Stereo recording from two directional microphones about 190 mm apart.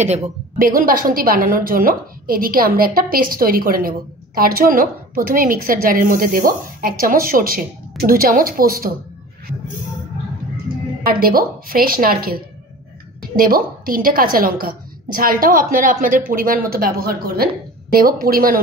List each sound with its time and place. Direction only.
0.0 s a woman's voice: 35° right (ahead or behind)
11.1 s a woman's voice: 50° right (ahead or behind)